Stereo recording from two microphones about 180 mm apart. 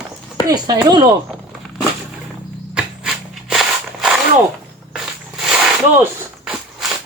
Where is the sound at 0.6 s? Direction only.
25° right (ahead or behind).